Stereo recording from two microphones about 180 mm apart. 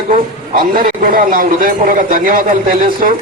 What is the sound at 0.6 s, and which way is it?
A man's voice, 50° right (ahead or behind).